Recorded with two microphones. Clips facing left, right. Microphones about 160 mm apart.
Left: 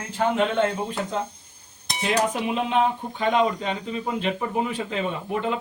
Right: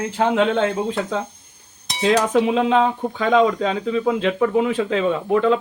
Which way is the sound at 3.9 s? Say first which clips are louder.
Right 9 dB; 90° right.